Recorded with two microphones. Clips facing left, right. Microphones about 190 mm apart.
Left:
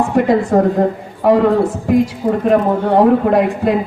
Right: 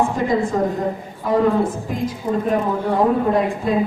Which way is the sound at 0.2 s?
70° left (ahead or behind).